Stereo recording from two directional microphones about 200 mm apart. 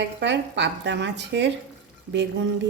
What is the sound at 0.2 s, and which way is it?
Speech, 60° right (ahead or behind).